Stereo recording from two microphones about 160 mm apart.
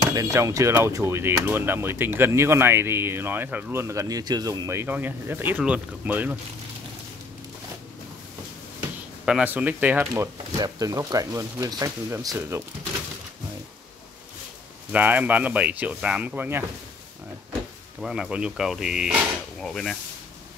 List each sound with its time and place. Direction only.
0.0 s speech: 20° right (ahead or behind)
9.2 s speech: 5° right (ahead or behind)
14.9 s speech: 10° right (ahead or behind)
18.0 s speech: 5° right (ahead or behind)